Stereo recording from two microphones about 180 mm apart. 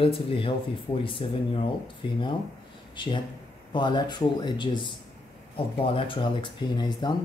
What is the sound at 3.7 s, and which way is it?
Speech, 25° left (ahead or behind).